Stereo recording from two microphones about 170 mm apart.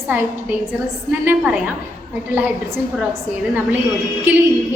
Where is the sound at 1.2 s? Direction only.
5° right (ahead or behind).